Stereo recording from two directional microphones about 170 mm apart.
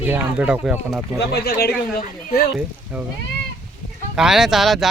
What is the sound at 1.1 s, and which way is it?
Speech, 70° left (ahead or behind).